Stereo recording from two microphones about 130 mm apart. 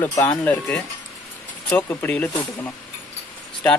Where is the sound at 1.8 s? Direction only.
15° left (ahead or behind).